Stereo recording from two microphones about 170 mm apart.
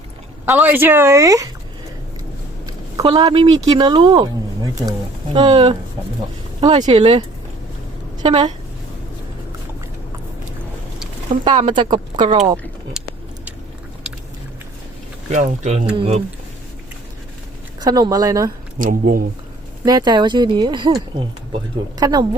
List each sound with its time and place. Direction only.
0.4 s speech: 15° right (ahead or behind)
2.6 s speech: 25° right (ahead or behind)
11.5 s speech: 30° right (ahead or behind)
12.9 s a sound: 5° right (ahead or behind)
15.3 s speech: 45° right (ahead or behind)
17.7 s speech: 25° right (ahead or behind)
18.8 s speech: 50° right (ahead or behind)
19.8 s speech: 25° right (ahead or behind)